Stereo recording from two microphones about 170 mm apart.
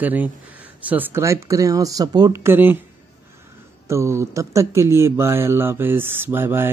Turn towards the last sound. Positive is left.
turn(degrees=-15)  # may be behind; listen again after turning